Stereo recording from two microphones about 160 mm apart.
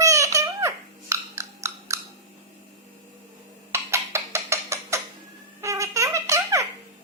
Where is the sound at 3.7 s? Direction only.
15° right (ahead or behind).